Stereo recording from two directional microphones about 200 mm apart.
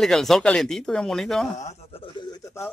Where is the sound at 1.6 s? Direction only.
25° left (ahead or behind).